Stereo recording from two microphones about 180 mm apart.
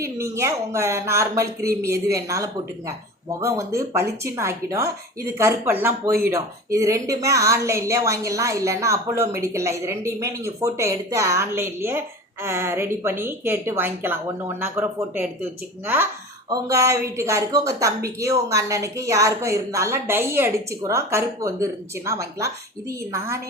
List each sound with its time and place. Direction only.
0.0 s speech: 15° right (ahead or behind)
16.5 s speech: 15° right (ahead or behind)